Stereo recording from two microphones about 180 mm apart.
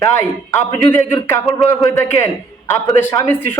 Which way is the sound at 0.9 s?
10° left (ahead or behind).